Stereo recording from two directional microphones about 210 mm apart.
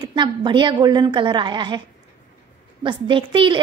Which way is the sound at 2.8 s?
25° right (ahead or behind).